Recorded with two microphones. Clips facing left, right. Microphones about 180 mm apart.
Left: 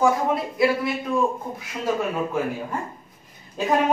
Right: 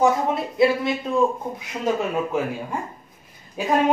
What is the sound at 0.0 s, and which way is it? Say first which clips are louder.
Speech: right 1 dB; 25° right (ahead or behind).